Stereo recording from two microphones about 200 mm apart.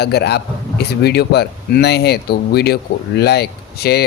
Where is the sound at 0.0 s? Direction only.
55° left (ahead or behind).